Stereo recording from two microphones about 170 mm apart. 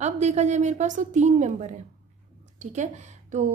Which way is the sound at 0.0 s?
40° right (ahead or behind).